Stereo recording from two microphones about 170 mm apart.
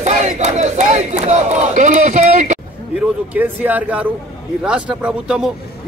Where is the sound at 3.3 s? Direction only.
10° right (ahead or behind).